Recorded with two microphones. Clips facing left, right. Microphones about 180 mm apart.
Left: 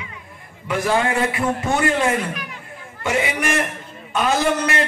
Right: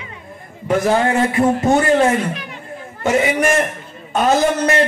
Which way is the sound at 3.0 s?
40° right (ahead or behind).